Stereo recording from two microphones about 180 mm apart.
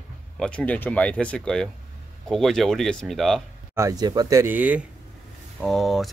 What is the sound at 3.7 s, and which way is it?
Speech, 20° right (ahead or behind).